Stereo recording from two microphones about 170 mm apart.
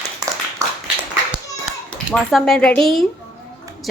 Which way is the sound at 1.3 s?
5° right (ahead or behind).